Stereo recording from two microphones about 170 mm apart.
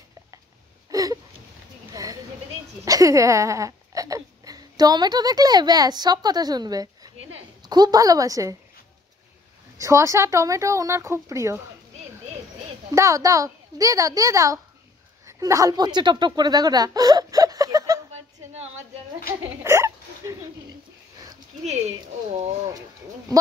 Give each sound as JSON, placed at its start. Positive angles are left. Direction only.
{"t": 0.8, "sound": "a sound", "side_deg": -20}
{"t": 2.8, "sound": "a child's voice", "side_deg": -20}
{"t": 9.8, "sound": "speech", "side_deg": -15}
{"t": 12.9, "sound": "a child's voice", "side_deg": -20}
{"t": 19.6, "sound": "hiccup", "side_deg": -15}